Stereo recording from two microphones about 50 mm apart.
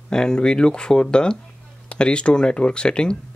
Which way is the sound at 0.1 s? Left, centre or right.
Centre.